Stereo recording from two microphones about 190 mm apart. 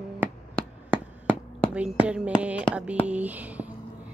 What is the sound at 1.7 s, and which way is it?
Speech, 5° right (ahead or behind).